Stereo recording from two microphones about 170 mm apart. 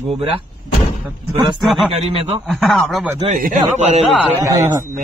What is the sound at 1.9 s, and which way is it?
Speech, 35° right (ahead or behind).